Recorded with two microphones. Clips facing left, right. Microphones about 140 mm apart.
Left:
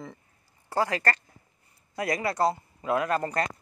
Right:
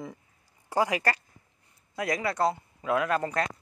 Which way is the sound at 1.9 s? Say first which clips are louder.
Left 1 dB; centre (ahead or behind).